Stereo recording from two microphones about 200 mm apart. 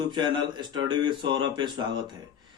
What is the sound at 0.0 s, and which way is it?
A man's voice, 25° right (ahead or behind).